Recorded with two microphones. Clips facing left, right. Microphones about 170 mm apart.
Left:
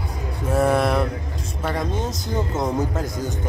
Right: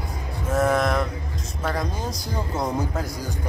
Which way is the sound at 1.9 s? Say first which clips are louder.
Left 4 dB; 25° left (ahead or behind).